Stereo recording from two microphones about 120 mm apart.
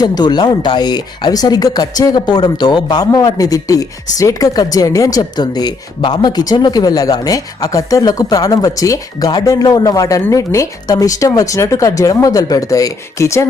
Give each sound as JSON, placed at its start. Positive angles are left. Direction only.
{"t": 0.0, "sound": "speech", "side_deg": 35}